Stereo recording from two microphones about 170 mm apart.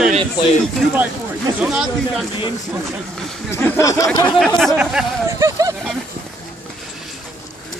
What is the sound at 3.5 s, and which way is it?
Speech, 15° left (ahead or behind).